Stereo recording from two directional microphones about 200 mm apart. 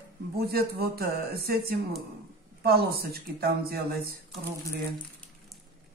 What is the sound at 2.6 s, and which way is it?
Speech, 50° right (ahead or behind).